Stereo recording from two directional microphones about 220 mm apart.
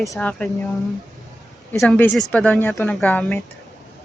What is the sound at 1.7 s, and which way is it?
Speech, 5° left (ahead or behind).